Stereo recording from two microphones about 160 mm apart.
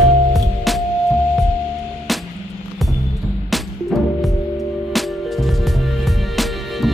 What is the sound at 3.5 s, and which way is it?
Music, centre (ahead or behind).